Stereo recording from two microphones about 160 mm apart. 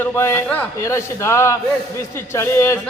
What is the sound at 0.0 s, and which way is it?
A man's voice, 15° left (ahead or behind).